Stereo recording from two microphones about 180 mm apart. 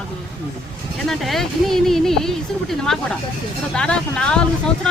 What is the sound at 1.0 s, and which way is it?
Speech, centre (ahead or behind).